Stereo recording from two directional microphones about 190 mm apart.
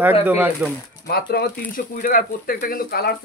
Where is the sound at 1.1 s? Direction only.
55° left (ahead or behind).